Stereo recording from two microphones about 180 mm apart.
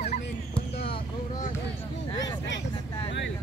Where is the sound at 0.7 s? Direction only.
30° left (ahead or behind).